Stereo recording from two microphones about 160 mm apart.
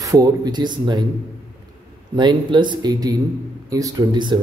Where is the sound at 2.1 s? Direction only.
30° right (ahead or behind).